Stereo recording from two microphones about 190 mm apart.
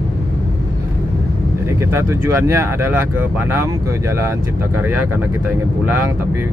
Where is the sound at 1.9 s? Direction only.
15° right (ahead or behind).